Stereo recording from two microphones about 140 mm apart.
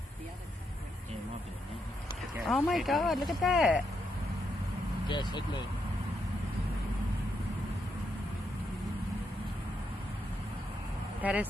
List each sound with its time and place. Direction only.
2.4 s speech: centre (ahead or behind)
5.0 s speech: 30° left (ahead or behind)
11.2 s speech: 10° right (ahead or behind)